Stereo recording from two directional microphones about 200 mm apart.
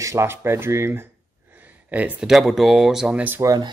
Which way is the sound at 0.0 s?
15° right (ahead or behind).